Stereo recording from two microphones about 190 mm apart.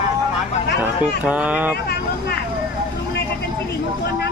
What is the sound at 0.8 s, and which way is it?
Speech, 5° right (ahead or behind).